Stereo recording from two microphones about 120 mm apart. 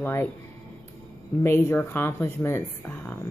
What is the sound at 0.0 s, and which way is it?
Speech, 20° left (ahead or behind).